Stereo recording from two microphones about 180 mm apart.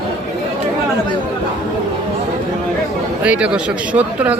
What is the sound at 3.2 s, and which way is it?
Speech, 5° right (ahead or behind).